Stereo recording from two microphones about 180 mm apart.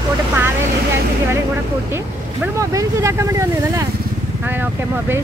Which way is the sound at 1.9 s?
15° right (ahead or behind).